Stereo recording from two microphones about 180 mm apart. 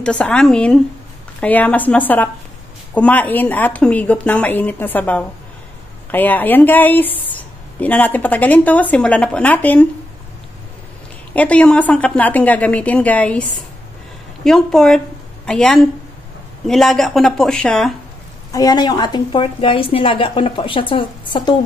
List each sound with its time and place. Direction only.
0.0 s a woman's voice: 5° left (ahead or behind)
11.3 s a woman's voice: 5° left (ahead or behind)
18.5 s a woman's voice: 20° left (ahead or behind)